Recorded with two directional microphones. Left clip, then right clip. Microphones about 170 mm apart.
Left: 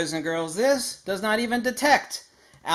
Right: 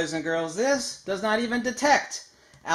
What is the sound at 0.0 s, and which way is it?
Speech, 30° left (ahead or behind).